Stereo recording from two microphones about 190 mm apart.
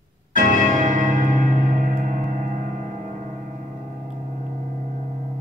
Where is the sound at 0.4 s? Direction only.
45° right (ahead or behind).